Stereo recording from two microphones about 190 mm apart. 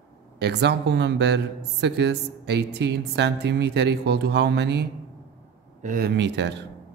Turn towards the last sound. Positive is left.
turn(degrees=-65)  # may be behind; listen again after turning